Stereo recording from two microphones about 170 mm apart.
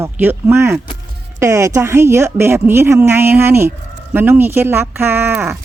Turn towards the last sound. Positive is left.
turn(degrees=-15)  # may be behind; listen again after turning